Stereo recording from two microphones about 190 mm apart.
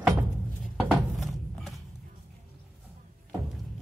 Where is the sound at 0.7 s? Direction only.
Centre (ahead or behind).